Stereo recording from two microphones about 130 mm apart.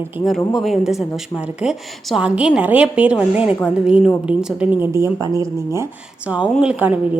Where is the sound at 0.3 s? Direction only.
Centre (ahead or behind).